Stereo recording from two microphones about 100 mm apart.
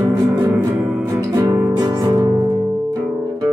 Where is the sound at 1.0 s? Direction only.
35° right (ahead or behind).